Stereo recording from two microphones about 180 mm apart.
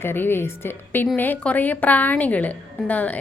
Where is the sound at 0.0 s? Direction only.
10° left (ahead or behind).